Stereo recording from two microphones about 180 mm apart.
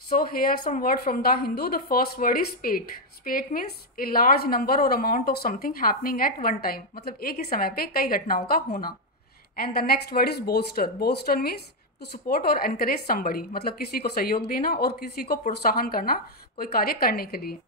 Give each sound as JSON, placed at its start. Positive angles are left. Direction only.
{"t": 0.2, "sound": "a woman's voice", "side_deg": 50}